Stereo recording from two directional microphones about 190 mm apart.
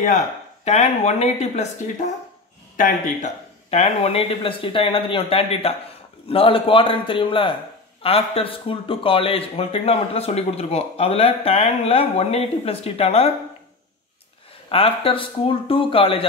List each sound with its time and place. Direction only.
0.7 s a man's voice: 35° left (ahead or behind)
3.7 s a man's voice: 35° left (ahead or behind)
14.7 s speech: 30° left (ahead or behind)